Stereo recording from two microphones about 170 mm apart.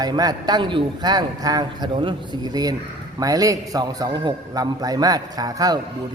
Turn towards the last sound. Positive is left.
turn(degrees=-20)  # may be behind; listen again after turning